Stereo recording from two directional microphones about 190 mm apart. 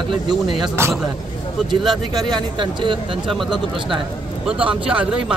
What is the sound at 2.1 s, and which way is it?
Speech, 20° right (ahead or behind).